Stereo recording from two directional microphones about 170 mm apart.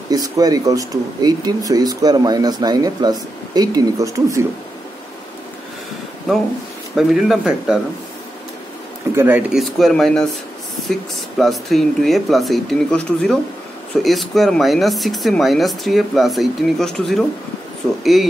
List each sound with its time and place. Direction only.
0.1 s speech: 20° right (ahead or behind)
7.0 s speech: centre (ahead or behind)
9.1 s speech: 10° right (ahead or behind)
9.6 s speech: centre (ahead or behind)